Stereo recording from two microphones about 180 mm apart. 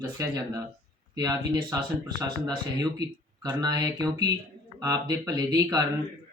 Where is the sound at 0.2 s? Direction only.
20° right (ahead or behind).